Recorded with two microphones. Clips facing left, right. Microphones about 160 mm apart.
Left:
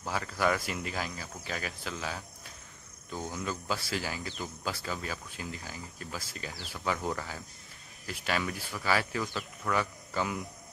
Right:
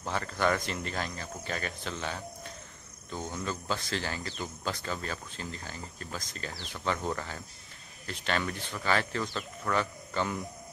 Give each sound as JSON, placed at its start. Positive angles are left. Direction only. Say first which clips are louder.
{"t": 0.0, "sound": "speech", "louder": "right 1 dB", "side_deg": 5}